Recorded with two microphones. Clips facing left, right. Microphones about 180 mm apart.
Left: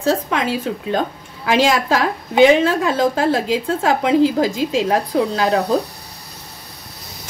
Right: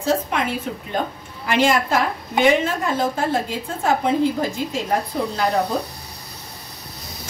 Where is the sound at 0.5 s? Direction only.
90° left.